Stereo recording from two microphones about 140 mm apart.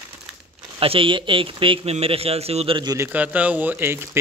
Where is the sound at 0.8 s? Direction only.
40° right (ahead or behind).